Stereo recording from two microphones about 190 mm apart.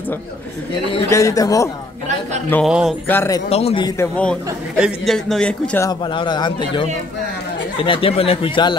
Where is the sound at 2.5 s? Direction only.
Centre (ahead or behind).